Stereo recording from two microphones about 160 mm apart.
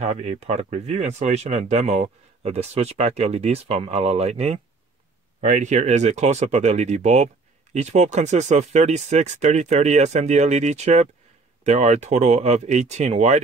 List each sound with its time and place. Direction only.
0.0 s speech: 45° right (ahead or behind)